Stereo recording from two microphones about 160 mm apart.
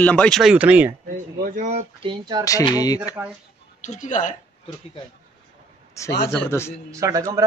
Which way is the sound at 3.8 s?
50° left (ahead or behind).